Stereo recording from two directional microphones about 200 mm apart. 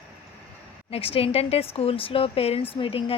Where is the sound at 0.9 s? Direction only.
30° left (ahead or behind).